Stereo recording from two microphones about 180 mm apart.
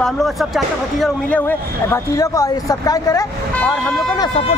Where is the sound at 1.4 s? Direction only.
10° left (ahead or behind).